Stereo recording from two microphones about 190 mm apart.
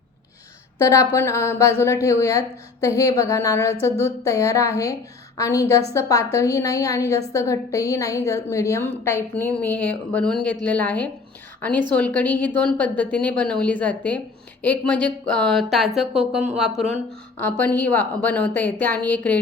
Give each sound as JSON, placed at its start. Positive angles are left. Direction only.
{"t": 0.8, "sound": "a woman's voice", "side_deg": 15}